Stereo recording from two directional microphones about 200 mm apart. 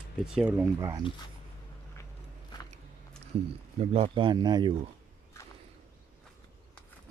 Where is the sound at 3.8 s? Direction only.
30° right (ahead or behind).